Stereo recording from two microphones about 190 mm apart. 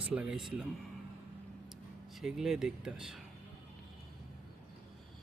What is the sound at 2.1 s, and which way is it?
Speech, centre (ahead or behind).